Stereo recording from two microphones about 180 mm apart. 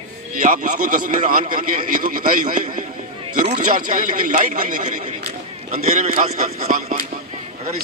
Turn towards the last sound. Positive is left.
turn(degrees=-50)  # may be behind; listen again after turning